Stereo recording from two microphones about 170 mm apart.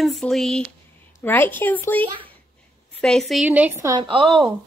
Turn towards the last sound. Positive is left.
turn(degrees=-30)  # may be behind; listen again after turning